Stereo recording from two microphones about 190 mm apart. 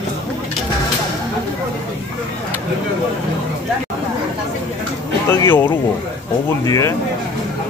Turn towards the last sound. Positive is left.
turn(degrees=15)  # may be behind; listen again after turning